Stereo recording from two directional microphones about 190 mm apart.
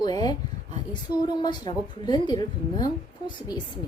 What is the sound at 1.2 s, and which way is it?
A woman's voice, 25° left (ahead or behind).